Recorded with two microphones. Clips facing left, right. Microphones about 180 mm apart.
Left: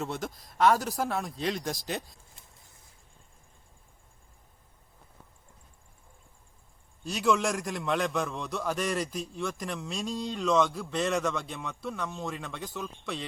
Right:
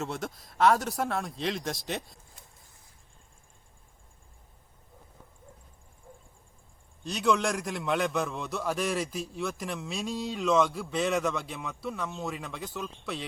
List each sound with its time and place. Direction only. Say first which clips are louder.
0.0 s a man's voice: even; centre (ahead or behind)
7.0 s a man's voice: even; centre (ahead or behind)